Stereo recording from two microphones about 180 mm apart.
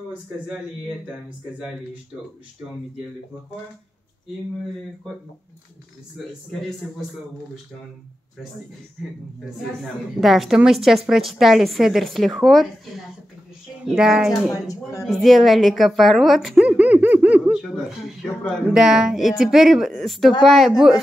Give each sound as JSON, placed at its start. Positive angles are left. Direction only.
{"t": 0.1, "sound": "speech", "side_deg": -5}
{"t": 10.2, "sound": "speech", "side_deg": 0}
{"t": 14.5, "sound": "speech", "side_deg": 20}
{"t": 15.0, "sound": "speech", "side_deg": 0}